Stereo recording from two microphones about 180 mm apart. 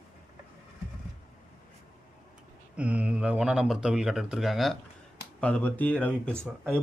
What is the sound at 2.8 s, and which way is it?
Speech, 5° right (ahead or behind).